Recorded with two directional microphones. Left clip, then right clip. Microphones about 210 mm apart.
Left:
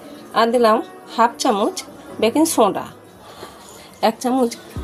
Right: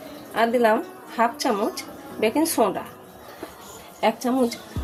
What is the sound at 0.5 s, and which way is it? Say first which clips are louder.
A woman's voice: left 5 dB; 35° left (ahead or behind).